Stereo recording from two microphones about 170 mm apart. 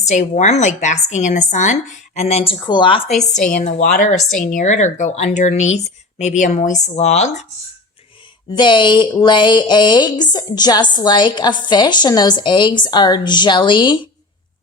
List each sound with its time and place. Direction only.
0.0 s a woman's voice: 40° left (ahead or behind)
3.3 s speech: 50° left (ahead or behind)
8.4 s speech: 25° left (ahead or behind)